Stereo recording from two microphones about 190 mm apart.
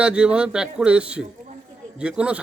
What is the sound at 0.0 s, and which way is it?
Speech, 5° right (ahead or behind).